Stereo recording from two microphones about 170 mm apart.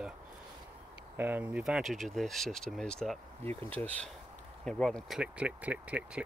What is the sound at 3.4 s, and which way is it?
Speech, 10° left (ahead or behind).